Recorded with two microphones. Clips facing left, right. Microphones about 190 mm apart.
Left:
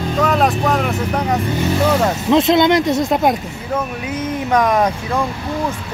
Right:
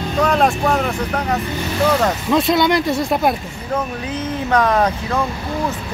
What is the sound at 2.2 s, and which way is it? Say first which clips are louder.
Speech: left 4 dB; 20° left (ahead or behind).